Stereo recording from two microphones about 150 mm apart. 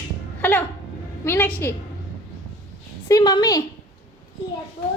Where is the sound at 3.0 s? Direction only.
25° left (ahead or behind).